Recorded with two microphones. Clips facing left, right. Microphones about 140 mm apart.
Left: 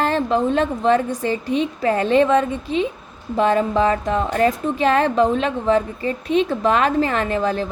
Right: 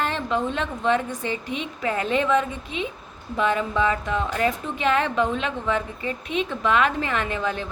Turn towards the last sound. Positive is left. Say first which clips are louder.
# left 6 dB
turn(degrees=35)  # may be behind; listen again after turning